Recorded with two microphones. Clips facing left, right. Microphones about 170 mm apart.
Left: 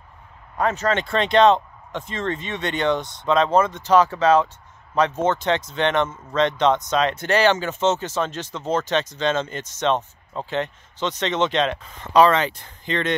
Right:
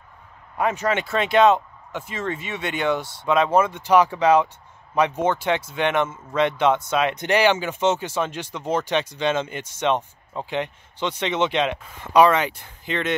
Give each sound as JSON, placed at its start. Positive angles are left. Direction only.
{"t": 0.6, "sound": "speech", "side_deg": -10}